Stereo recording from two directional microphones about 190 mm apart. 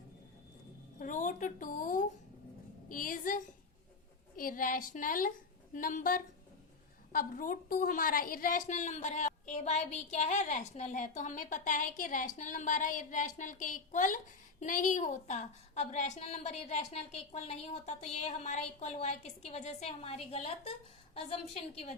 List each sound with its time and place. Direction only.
0.9 s a woman's voice: 45° left (ahead or behind)